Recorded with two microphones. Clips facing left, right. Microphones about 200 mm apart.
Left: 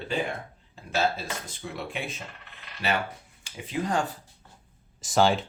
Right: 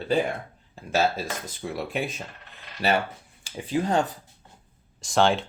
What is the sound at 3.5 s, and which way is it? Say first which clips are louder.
Speech: right 4 dB; 30° right (ahead or behind).